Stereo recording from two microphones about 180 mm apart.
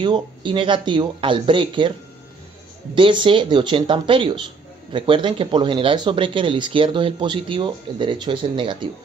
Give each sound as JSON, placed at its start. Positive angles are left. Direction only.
{"t": 0.0, "sound": "speech", "side_deg": -25}